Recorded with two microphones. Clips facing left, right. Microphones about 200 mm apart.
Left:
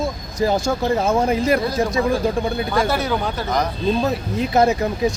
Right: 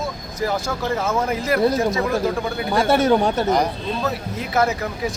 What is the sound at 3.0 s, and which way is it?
Speech, 45° right (ahead or behind).